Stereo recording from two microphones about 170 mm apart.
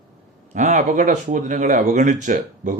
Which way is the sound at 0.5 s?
45° right (ahead or behind).